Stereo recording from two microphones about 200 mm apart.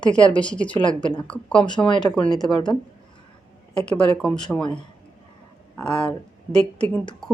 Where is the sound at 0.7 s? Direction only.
25° left (ahead or behind).